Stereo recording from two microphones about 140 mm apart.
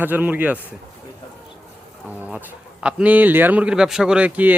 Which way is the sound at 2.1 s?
10° right (ahead or behind).